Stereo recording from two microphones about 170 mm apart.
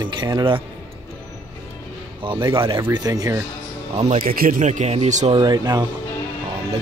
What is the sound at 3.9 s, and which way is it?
Speech, 35° right (ahead or behind).